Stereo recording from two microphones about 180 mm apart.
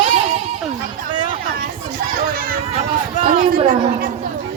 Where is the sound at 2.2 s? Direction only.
55° right (ahead or behind).